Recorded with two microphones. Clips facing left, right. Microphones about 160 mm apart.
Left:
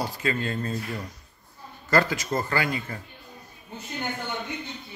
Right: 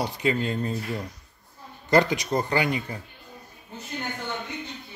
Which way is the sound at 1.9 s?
20° right (ahead or behind).